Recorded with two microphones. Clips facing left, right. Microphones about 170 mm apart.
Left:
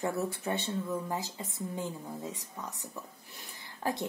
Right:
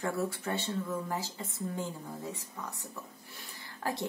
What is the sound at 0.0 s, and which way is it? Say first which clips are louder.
Speech: left 1 dB; 20° left (ahead or behind).